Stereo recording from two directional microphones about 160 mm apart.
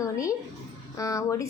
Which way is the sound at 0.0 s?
20° left (ahead or behind).